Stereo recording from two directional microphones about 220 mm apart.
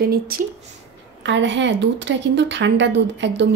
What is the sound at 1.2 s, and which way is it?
Speech, 55° right (ahead or behind).